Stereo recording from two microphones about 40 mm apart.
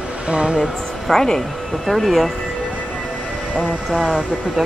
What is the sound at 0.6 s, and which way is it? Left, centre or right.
Speech, centre.